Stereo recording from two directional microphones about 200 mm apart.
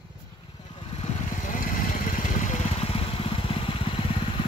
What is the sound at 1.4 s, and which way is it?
Vehicle, 40° left (ahead or behind).